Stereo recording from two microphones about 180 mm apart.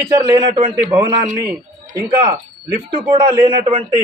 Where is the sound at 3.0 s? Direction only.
25° right (ahead or behind).